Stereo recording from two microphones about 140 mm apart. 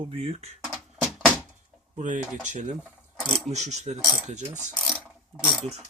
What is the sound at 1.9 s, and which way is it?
Speech, 60° right (ahead or behind).